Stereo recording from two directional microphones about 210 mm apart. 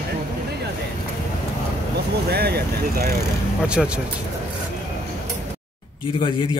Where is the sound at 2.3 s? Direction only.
50° right (ahead or behind).